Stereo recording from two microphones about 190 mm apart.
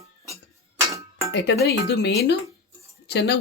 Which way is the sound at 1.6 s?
60° left (ahead or behind).